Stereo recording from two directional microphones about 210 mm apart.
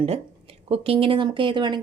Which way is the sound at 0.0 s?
30° right (ahead or behind).